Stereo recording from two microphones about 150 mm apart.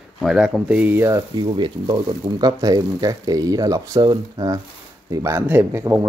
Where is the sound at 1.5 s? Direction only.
30° right (ahead or behind).